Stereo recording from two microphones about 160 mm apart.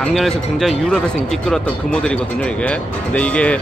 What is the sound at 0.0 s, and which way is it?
Speech, centre (ahead or behind).